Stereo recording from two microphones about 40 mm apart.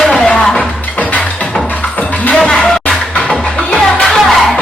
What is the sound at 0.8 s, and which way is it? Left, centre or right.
Music, left.